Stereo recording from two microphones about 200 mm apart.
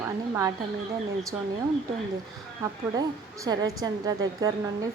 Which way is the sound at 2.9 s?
20° right (ahead or behind).